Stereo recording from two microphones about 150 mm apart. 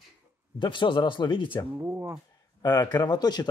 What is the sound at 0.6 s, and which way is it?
Speech, 35° left (ahead or behind).